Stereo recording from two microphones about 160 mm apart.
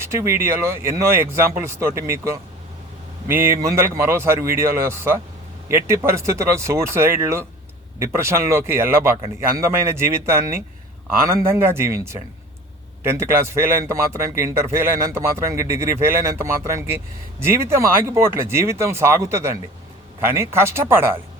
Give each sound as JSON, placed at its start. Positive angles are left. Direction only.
{"t": 0.0, "sound": "a man's voice", "side_deg": -15}
{"t": 13.0, "sound": "a man's voice", "side_deg": -15}